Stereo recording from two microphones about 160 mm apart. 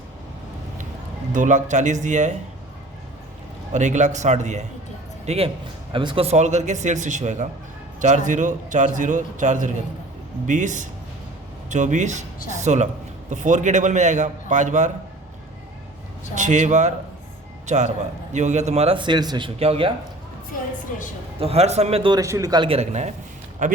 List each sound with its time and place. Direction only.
1.3 s a man's voice: 50° right (ahead or behind)
3.7 s a man's voice: 50° right (ahead or behind)
5.9 s a man's voice: 30° right (ahead or behind); by 14.9 s 50° right (ahead or behind)
16.3 s a man's voice: 50° right (ahead or behind); by 19.5 s 25° right (ahead or behind)
19.5 s a man's voice: 40° right (ahead or behind)
21.3 s a man's voice: 40° right (ahead or behind)
22.2 s a man's voice: 20° right (ahead or behind)
22.6 s a man's voice: 40° right (ahead or behind)